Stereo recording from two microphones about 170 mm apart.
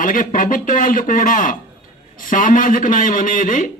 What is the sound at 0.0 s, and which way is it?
Speech, 55° left (ahead or behind).